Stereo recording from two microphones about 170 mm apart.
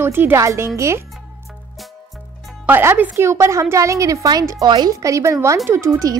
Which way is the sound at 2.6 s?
10° right (ahead or behind).